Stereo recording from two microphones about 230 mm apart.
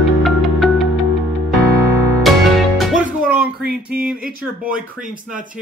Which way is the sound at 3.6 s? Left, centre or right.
Right.